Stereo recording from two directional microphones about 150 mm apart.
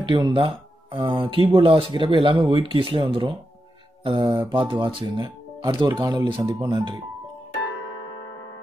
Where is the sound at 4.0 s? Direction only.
35° right (ahead or behind).